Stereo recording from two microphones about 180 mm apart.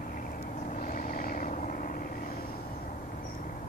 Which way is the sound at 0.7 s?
50° left (ahead or behind).